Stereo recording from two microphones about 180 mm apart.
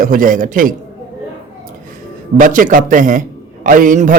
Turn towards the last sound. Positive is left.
turn(degrees=-45)  # may be behind; listen again after turning